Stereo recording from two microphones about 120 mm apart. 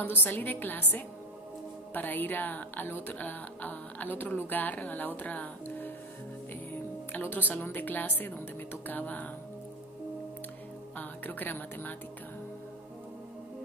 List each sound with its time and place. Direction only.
0.2 s a woman's voice: 15° left (ahead or behind)
2.0 s a woman's voice: 15° left (ahead or behind)
11.0 s speech: 15° left (ahead or behind)